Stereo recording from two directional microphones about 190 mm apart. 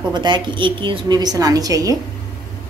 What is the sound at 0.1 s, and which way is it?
A woman's voice, 25° right (ahead or behind).